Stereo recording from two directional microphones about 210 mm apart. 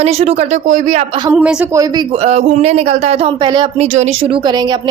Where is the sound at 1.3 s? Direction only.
5° right (ahead or behind).